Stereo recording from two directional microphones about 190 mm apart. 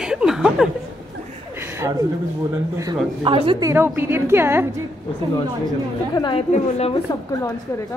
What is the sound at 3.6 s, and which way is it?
A woman's voice, 15° right (ahead or behind).